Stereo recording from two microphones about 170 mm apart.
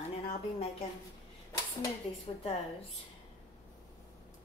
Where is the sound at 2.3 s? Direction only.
30° left (ahead or behind).